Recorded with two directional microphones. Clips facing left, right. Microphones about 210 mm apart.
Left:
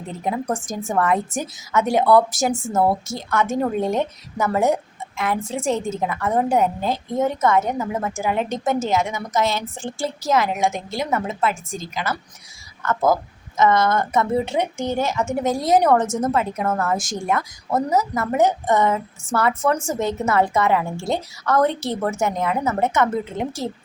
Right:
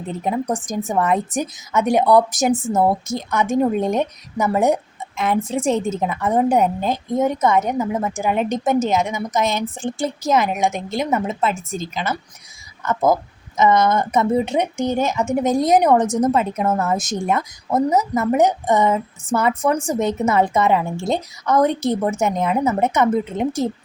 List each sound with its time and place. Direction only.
0.3 s a woman's voice: 15° right (ahead or behind)